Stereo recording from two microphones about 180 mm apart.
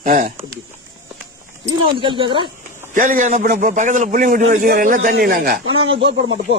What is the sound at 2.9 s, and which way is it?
A man's voice, 45° right (ahead or behind).